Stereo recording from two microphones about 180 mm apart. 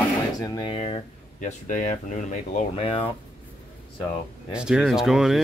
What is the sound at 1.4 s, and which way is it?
Speech, 45° left (ahead or behind).